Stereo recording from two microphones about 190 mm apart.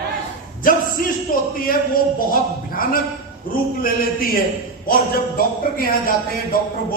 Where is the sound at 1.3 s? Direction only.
45° left (ahead or behind).